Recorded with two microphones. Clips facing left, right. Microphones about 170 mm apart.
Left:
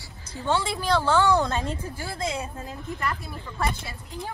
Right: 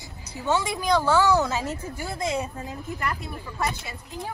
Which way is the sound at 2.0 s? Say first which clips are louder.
Right 3 dB; 20° right (ahead or behind).